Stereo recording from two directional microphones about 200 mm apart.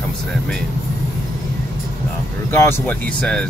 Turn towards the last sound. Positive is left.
turn(degrees=5)  # may be behind; listen again after turning